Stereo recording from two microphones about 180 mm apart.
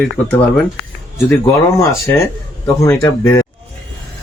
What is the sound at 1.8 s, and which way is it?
Speech, 15° left (ahead or behind).